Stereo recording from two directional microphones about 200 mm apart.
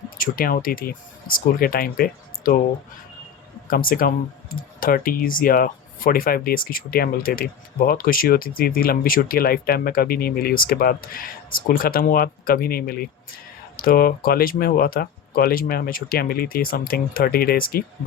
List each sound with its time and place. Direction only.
0.2 s speech: 45° left (ahead or behind)
3.7 s speech: 45° left (ahead or behind)